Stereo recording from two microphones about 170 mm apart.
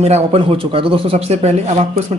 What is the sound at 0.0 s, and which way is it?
Speech, 35° right (ahead or behind).